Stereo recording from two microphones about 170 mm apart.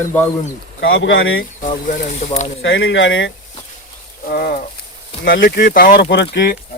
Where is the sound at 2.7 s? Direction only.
90° left.